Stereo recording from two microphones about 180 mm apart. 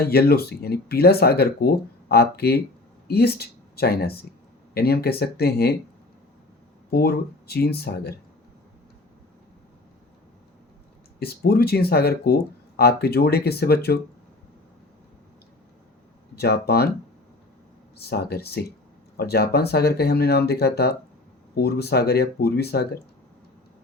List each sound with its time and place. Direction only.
0.0 s speech: 60° left (ahead or behind)
6.9 s speech: 60° left (ahead or behind)
11.2 s speech: 60° left (ahead or behind)
16.3 s speech: 60° left (ahead or behind)
18.0 s speech: 60° left (ahead or behind)